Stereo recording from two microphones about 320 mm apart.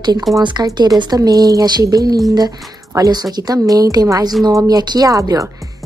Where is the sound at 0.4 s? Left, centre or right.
Centre.